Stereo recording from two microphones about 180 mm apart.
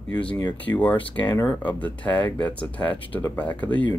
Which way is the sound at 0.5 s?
10° left (ahead or behind).